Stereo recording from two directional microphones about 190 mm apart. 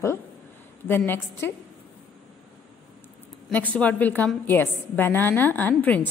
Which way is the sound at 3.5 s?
10° left (ahead or behind).